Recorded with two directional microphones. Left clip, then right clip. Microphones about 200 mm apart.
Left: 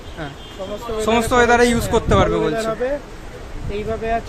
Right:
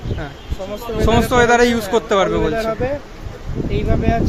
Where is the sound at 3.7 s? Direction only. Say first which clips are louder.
Right 1 dB; 25° right (ahead or behind).